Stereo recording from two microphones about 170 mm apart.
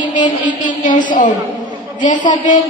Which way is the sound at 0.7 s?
50° left (ahead or behind).